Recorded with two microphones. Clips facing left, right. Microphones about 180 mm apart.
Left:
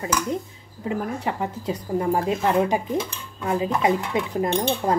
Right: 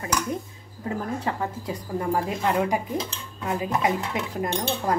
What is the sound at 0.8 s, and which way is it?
A woman's voice, 20° left (ahead or behind).